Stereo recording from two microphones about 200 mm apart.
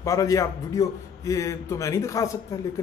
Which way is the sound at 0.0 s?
15° left (ahead or behind).